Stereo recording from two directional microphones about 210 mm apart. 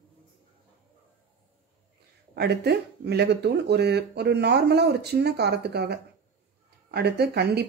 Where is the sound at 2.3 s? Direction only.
50° right (ahead or behind).